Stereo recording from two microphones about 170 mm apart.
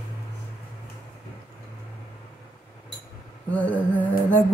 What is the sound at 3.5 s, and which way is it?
Speech, 10° left (ahead or behind).